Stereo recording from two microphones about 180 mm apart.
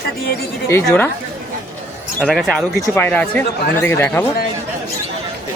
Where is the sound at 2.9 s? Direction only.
10° left (ahead or behind).